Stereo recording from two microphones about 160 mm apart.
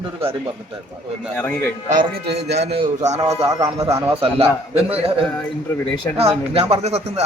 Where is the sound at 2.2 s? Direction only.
90° right.